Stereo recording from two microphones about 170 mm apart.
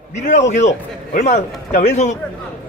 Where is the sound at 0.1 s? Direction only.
45° left (ahead or behind).